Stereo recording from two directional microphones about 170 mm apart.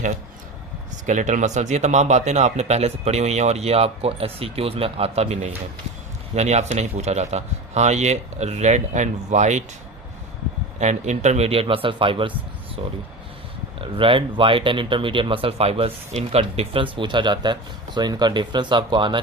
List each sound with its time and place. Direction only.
1.0 s speech: 45° right (ahead or behind)
10.8 s speech: 45° right (ahead or behind)